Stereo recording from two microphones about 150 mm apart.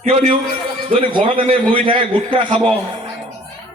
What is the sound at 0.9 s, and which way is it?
A man's voice, 45° right (ahead or behind).